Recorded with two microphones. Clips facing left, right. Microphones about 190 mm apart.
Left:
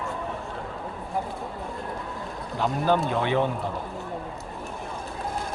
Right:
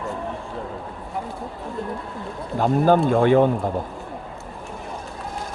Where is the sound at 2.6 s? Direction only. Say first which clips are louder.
Right 6 dB; 45° right (ahead or behind).